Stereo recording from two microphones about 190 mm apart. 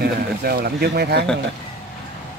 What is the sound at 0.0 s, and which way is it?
Speech, 55° right (ahead or behind).